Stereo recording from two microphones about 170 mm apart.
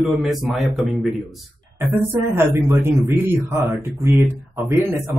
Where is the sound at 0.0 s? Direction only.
Centre (ahead or behind).